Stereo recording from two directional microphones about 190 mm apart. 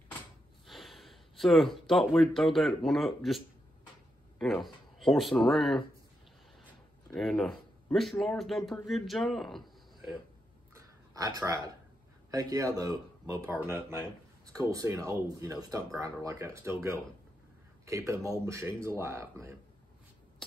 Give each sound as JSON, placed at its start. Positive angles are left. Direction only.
{"t": 0.7, "sound": "speech", "side_deg": 0}
{"t": 7.2, "sound": "speech", "side_deg": 0}
{"t": 10.7, "sound": "a sound", "side_deg": -20}
{"t": 12.3, "sound": "speech", "side_deg": -20}
{"t": 17.8, "sound": "speech", "side_deg": -15}